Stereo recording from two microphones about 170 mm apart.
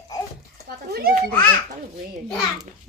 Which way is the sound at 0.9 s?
65° right (ahead or behind).